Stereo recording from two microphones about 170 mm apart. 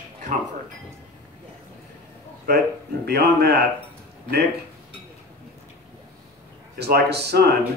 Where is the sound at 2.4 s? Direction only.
65° right (ahead or behind).